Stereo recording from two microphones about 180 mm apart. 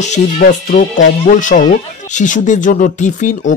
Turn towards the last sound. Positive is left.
turn(degrees=45)  # may be behind; listen again after turning